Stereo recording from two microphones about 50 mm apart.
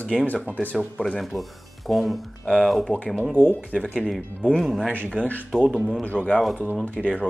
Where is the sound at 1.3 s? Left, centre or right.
Right.